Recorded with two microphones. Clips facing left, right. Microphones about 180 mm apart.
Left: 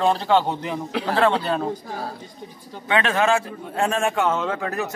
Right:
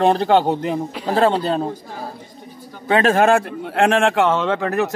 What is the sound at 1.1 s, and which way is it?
Speech, 35° right (ahead or behind).